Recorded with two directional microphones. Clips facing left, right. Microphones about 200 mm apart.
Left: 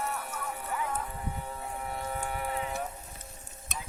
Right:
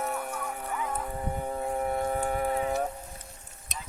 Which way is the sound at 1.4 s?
45° right (ahead or behind).